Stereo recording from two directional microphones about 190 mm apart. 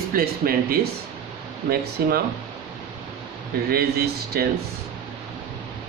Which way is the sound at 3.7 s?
55° right (ahead or behind).